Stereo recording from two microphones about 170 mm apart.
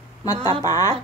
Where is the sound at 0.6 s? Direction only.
20° left (ahead or behind).